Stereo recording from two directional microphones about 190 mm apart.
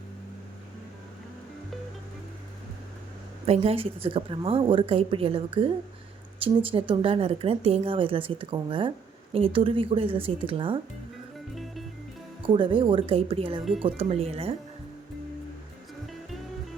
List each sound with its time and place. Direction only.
3.4 s a woman's voice: 30° right (ahead or behind)
11.5 s music: centre (ahead or behind)
12.5 s a woman's voice: 25° right (ahead or behind)